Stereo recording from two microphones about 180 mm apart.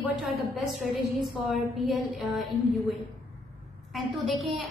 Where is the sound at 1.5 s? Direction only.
Centre (ahead or behind).